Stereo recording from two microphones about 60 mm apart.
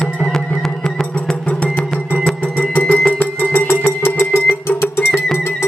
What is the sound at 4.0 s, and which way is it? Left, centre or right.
Music, left.